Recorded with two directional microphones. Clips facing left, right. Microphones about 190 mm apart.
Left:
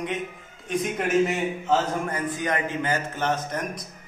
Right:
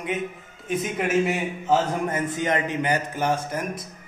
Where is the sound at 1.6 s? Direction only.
20° right (ahead or behind).